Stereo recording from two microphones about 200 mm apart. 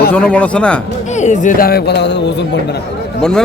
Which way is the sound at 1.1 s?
35° left (ahead or behind).